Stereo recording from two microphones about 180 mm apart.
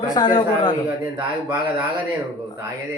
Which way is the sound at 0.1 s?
20° left (ahead or behind).